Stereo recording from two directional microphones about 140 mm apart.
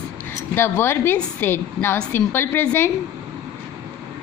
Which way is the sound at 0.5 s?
15° left (ahead or behind).